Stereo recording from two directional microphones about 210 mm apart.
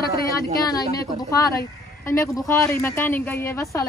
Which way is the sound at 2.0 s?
15° left (ahead or behind).